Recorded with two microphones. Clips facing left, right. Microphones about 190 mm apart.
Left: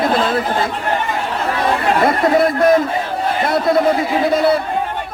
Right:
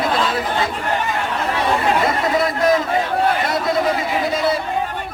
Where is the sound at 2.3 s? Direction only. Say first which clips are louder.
Left 4 dB; 55° left (ahead or behind).